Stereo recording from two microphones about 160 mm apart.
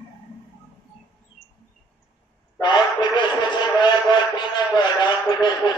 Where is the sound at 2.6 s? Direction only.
30° left (ahead or behind).